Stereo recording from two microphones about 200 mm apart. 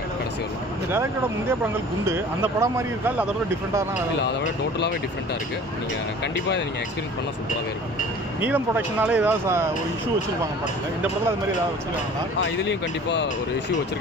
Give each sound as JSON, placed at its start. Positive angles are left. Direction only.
{"t": 2.0, "sound": "speech", "side_deg": -10}
{"t": 8.4, "sound": "speech", "side_deg": -10}
{"t": 12.6, "sound": "speech", "side_deg": 60}